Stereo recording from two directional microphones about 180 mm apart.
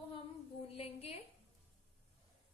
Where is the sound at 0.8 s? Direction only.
35° left (ahead or behind).